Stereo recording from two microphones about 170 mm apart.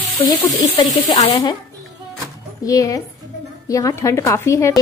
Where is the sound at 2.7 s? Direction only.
20° left (ahead or behind).